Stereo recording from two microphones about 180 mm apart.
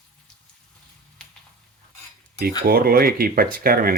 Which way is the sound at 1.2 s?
5° left (ahead or behind).